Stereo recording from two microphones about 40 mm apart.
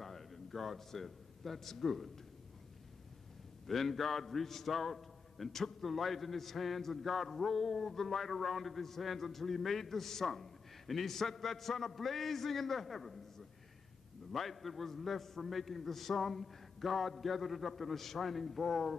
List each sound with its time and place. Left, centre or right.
0.0 s a man's voice: centre
3.6 s a man's voice: centre
14.3 s a man's voice: centre